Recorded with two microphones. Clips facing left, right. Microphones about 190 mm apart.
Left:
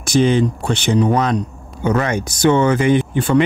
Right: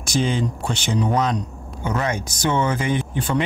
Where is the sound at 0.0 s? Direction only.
65° left (ahead or behind).